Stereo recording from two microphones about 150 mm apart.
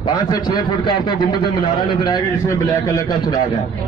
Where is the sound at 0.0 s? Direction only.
25° left (ahead or behind).